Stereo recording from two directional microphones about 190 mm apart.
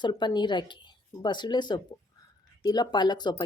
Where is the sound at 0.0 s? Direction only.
25° left (ahead or behind).